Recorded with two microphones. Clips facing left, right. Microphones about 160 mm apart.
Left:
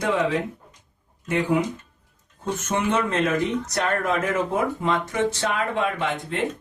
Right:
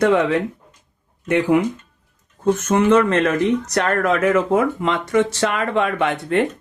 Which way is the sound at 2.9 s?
90° right.